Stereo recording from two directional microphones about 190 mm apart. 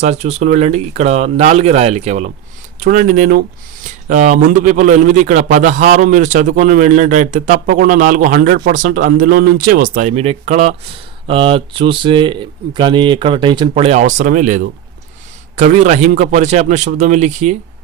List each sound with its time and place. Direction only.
0.0 s a man's voice: 35° right (ahead or behind)